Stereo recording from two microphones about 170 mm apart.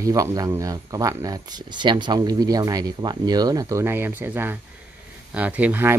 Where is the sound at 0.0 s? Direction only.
20° right (ahead or behind).